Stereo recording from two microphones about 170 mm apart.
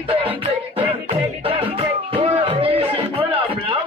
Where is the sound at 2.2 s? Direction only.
35° right (ahead or behind).